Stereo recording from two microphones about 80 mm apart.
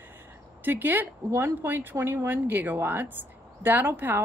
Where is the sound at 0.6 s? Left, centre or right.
Right.